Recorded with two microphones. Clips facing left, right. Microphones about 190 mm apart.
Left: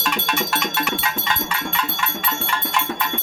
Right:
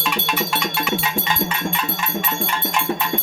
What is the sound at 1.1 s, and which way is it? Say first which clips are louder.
Cowbell: right 3 dB; 15° right (ahead or behind).